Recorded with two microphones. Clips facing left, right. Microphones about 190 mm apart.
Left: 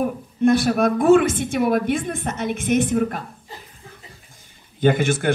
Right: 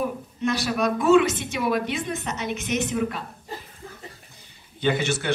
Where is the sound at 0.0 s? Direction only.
50° left (ahead or behind).